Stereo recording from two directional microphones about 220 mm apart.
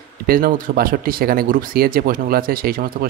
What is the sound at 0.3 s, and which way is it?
Speech, 40° right (ahead or behind).